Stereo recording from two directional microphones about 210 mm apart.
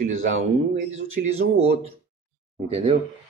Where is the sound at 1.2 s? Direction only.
50° right (ahead or behind).